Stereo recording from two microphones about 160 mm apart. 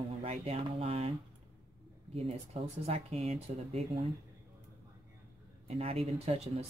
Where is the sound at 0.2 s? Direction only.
35° right (ahead or behind).